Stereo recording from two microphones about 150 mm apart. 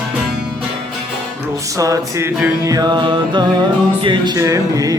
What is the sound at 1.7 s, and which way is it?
Music, 20° right (ahead or behind).